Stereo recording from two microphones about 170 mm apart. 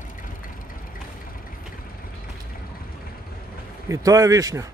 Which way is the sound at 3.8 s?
20° right (ahead or behind).